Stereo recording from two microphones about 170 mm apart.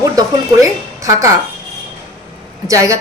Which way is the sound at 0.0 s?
20° right (ahead or behind).